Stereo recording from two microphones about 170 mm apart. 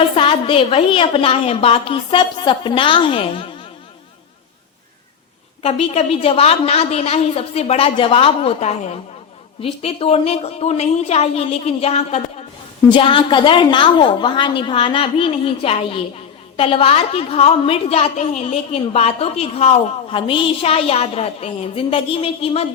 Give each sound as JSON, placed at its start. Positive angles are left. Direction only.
{"t": 0.2, "sound": "a woman's voice", "side_deg": 30}
{"t": 5.6, "sound": "a woman's voice", "side_deg": 35}